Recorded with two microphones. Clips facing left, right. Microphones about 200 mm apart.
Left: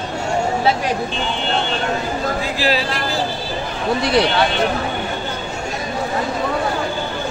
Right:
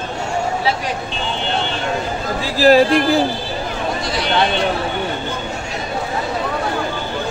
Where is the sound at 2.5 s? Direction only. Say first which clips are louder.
Right 9 dB; 45° right (ahead or behind).